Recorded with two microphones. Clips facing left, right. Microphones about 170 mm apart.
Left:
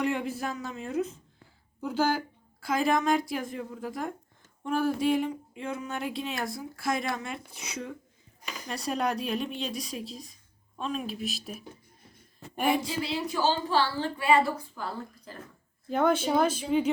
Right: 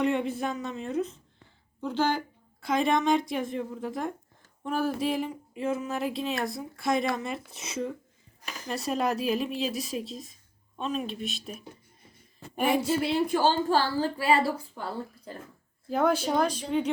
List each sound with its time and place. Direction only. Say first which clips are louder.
0.0 s speech: right 3 dB; centre (ahead or behind)
13.0 s a woman's voice: right 4 dB; 55° right (ahead or behind); by 15.4 s 30° right (ahead or behind)
15.9 s speech: even; centre (ahead or behind)